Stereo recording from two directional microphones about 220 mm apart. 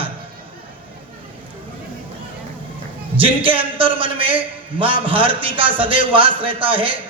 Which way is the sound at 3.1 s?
25° right (ahead or behind).